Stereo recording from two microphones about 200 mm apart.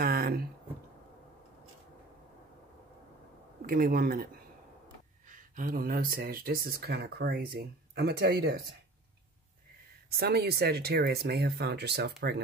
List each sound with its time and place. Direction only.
0.0 s a sound: 50° right (ahead or behind)
3.6 s speech: 45° right (ahead or behind)
5.3 s speech: 45° right (ahead or behind)
10.0 s speech: 50° right (ahead or behind)